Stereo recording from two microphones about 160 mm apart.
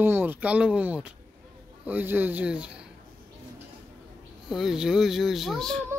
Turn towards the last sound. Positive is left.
turn(degrees=0)  # may be behind; listen again after turning